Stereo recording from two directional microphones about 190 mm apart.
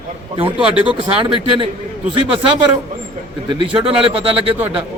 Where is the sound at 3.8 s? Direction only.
30° right (ahead or behind).